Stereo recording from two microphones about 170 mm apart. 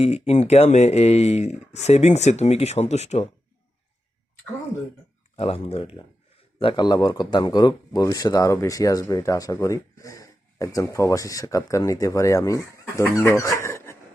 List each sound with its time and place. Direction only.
0.0 s speech: 40° left (ahead or behind)
5.4 s speech: 35° left (ahead or behind); by 13.2 s 20° left (ahead or behind)
13.3 s dog: 20° left (ahead or behind)